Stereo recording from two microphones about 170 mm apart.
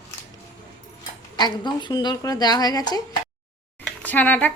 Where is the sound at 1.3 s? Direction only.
25° left (ahead or behind).